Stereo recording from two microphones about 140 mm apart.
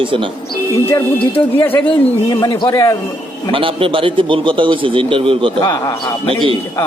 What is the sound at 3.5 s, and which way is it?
Speech, 40° right (ahead or behind).